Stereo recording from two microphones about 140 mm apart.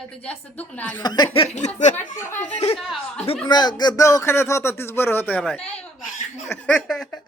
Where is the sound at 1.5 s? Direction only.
60° left (ahead or behind).